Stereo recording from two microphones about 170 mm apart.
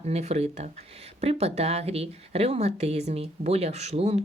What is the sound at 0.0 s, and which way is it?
Speech, 40° right (ahead or behind).